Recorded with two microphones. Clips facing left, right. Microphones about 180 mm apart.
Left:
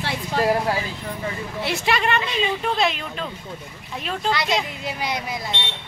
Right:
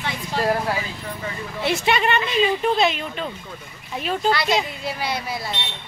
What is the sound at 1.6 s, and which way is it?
A woman's voice, centre (ahead or behind).